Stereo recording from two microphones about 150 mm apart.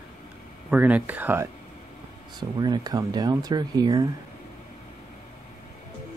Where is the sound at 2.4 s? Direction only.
30° right (ahead or behind).